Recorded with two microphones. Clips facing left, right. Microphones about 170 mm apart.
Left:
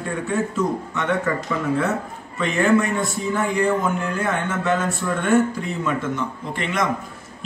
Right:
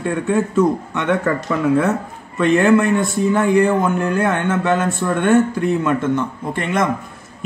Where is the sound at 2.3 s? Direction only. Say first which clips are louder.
Right 5 dB; 60° right (ahead or behind).